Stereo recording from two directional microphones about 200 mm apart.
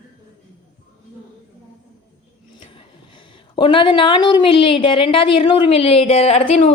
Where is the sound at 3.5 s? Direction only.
25° left (ahead or behind).